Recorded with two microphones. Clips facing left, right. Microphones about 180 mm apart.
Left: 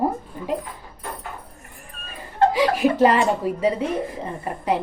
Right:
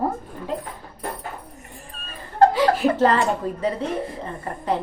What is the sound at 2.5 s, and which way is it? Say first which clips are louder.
A woman's voice: even; 15° left (ahead or behind).